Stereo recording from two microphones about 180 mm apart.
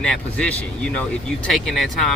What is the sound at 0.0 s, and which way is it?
Speech, 5° left (ahead or behind).